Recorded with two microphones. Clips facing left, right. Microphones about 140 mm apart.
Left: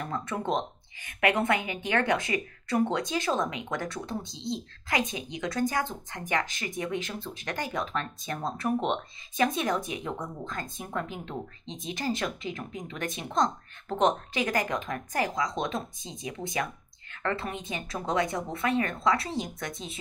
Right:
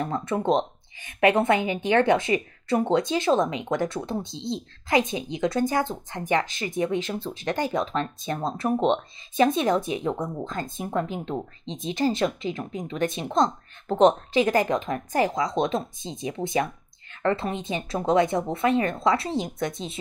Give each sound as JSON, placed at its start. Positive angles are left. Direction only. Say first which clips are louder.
{"t": 0.0, "sound": "speech", "louder": "right 6 dB", "side_deg": -25}